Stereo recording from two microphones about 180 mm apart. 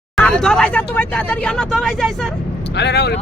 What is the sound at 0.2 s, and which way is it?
Speech, 5° left (ahead or behind).